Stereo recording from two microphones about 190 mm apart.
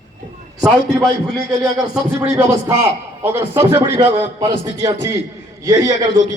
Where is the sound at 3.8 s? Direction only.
25° right (ahead or behind).